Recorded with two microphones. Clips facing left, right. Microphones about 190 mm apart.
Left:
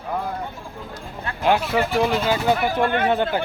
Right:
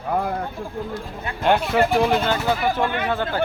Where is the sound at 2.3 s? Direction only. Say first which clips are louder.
Left 1 dB; 15° left (ahead or behind).